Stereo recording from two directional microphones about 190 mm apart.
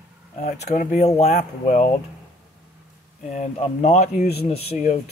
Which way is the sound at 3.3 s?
35° left (ahead or behind).